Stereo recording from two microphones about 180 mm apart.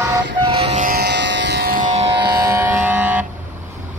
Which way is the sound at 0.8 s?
60° right (ahead or behind).